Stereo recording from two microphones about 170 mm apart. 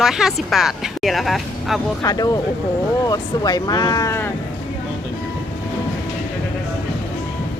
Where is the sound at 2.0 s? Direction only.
20° left (ahead or behind).